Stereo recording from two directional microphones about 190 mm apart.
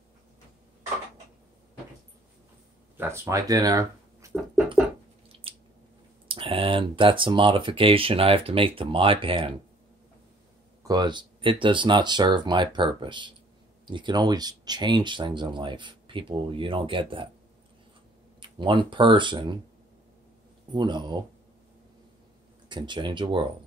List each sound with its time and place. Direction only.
3.0 s speech: 15° right (ahead or behind)
5.5 s squish: 30° right (ahead or behind)
6.2 s speech: 30° right (ahead or behind)
10.8 s speech: 20° right (ahead or behind)
18.4 s speech: 25° right (ahead or behind)
20.7 s speech: 25° right (ahead or behind)
22.7 s speech: 25° right (ahead or behind)